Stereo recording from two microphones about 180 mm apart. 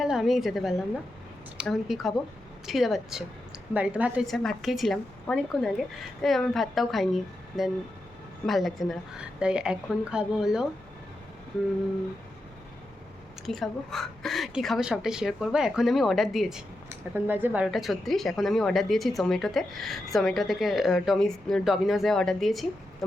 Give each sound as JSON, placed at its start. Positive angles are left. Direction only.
{"t": 0.0, "sound": "a woman's voice", "side_deg": 0}
{"t": 13.4, "sound": "speech", "side_deg": 0}